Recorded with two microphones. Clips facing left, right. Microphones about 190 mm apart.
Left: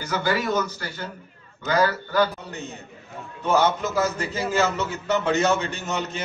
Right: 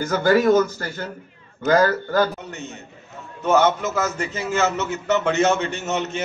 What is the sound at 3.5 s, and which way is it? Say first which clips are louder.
A man's voice: right 2 dB; 35° left (ahead or behind).